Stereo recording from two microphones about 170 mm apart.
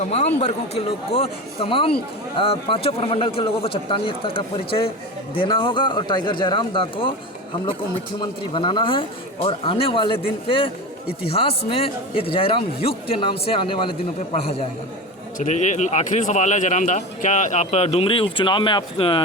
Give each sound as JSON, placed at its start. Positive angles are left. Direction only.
{"t": 0.0, "sound": "a man's voice", "side_deg": 40}
{"t": 8.2, "sound": "a man's voice", "side_deg": 30}